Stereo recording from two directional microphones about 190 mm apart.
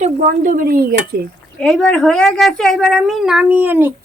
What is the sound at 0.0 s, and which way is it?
Speech, 40° right (ahead or behind).